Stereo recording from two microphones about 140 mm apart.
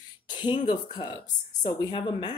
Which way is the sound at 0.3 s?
35° left (ahead or behind).